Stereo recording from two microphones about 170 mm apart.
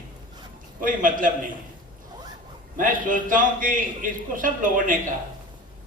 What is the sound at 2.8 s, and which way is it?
A man's voice, 50° right (ahead or behind).